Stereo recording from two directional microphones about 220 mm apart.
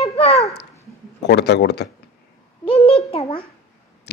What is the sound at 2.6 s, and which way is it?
Speech, 25° left (ahead or behind).